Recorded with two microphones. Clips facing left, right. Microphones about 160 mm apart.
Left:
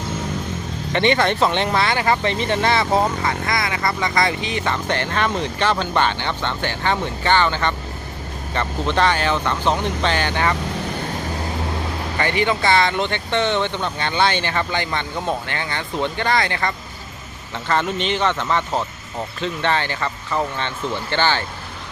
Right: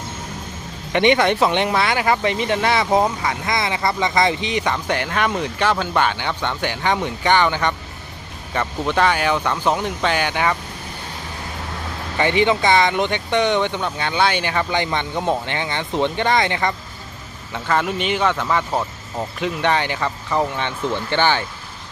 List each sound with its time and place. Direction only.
0.9 s speech: 15° right (ahead or behind)
12.1 s speech: 20° right (ahead or behind)
17.5 s speech: 10° right (ahead or behind)